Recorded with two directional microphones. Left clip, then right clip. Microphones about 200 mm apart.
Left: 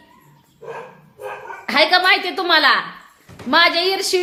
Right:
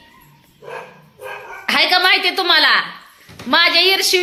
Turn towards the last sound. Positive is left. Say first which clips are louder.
# right 5 dB
turn(degrees=0)  # may be behind; listen again after turning